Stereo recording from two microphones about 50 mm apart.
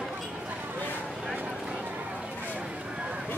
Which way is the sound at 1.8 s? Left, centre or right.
Right.